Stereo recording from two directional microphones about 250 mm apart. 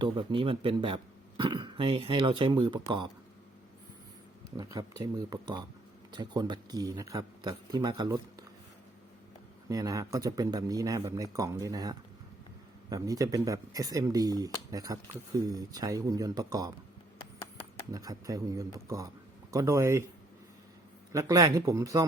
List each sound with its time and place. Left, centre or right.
0.0 s speech: centre
4.5 s speech: centre
9.6 s speech: centre
17.2 s horse: left
17.9 s speech: centre
21.1 s speech: centre